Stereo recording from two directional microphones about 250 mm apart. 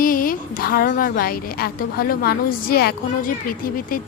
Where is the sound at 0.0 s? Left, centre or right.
Left.